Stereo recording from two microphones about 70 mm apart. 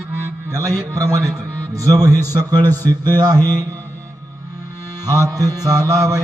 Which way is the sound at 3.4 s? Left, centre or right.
Right.